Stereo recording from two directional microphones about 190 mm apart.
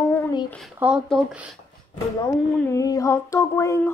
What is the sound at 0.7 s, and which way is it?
Speech, 5° right (ahead or behind).